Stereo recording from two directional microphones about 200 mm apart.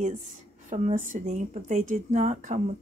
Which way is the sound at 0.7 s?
40° right (ahead or behind).